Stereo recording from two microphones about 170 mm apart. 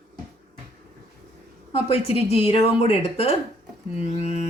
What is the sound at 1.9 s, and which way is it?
A woman's voice, 35° left (ahead or behind).